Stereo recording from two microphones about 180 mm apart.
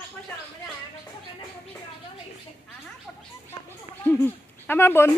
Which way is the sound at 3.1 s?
Centre (ahead or behind).